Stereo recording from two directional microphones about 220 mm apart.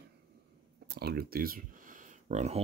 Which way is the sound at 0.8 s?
45° right (ahead or behind).